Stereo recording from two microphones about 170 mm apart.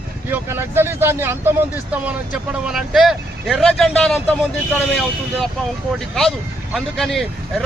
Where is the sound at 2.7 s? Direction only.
Centre (ahead or behind).